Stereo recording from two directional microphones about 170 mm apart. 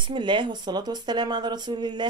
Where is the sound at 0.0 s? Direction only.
30° right (ahead or behind).